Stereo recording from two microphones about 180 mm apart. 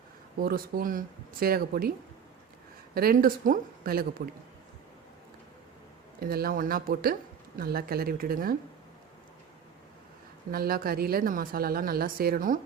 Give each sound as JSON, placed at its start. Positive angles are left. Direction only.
{"t": 0.4, "sound": "speech", "side_deg": -55}
{"t": 2.9, "sound": "speech", "side_deg": -55}
{"t": 6.1, "sound": "speech", "side_deg": -55}
{"t": 10.5, "sound": "speech", "side_deg": -55}